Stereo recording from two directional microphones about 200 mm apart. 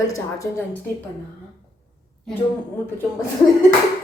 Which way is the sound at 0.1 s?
15° left (ahead or behind).